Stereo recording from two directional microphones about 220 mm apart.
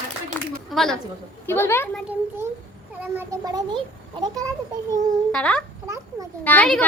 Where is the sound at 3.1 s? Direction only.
15° right (ahead or behind).